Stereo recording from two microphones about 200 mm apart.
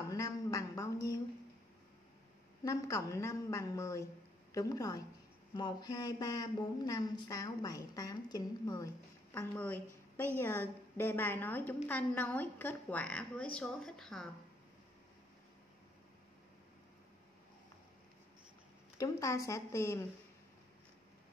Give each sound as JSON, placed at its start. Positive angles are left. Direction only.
{"t": 0.1, "sound": "a sound", "side_deg": 15}
{"t": 2.6, "sound": "a woman's voice", "side_deg": 15}
{"t": 18.9, "sound": "a woman's voice", "side_deg": 15}